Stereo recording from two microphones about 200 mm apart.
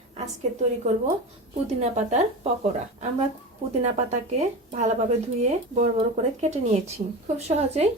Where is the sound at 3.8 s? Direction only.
35° right (ahead or behind).